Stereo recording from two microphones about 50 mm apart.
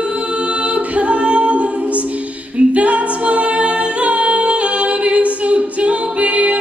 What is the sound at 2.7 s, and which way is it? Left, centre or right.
A capella, right.